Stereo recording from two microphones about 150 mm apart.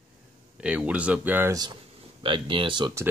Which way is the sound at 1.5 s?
25° right (ahead or behind).